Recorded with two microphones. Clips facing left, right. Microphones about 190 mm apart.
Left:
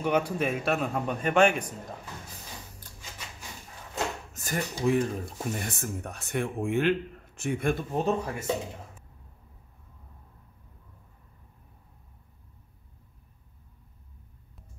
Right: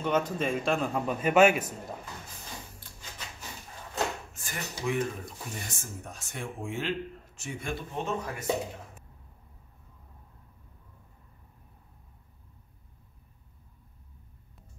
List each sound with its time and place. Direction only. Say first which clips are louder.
0.0 s a man's voice: left 2 dB; 10° left (ahead or behind); by 1.7 s 5° right (ahead or behind)
4.3 s speech: left 7 dB; 40° left (ahead or behind)
5.7 s a man's voice: left 7 dB; 60° left (ahead or behind)
7.9 s speech: left 5 dB; 35° left (ahead or behind)